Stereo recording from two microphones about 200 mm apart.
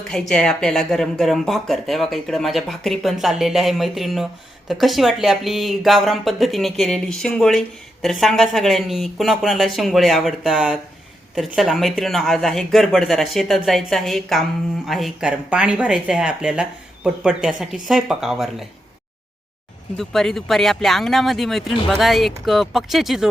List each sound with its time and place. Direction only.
0.1 s speech: 5° left (ahead or behind)
20.0 s speech: centre (ahead or behind)